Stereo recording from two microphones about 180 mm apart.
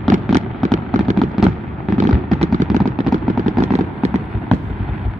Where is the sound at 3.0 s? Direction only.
Centre (ahead or behind).